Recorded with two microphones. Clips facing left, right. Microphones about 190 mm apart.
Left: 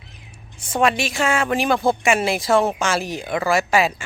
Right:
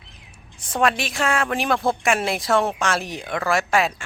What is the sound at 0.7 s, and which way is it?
Speech, centre (ahead or behind).